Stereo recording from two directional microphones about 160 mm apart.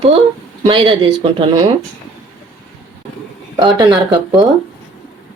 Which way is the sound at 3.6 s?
30° right (ahead or behind).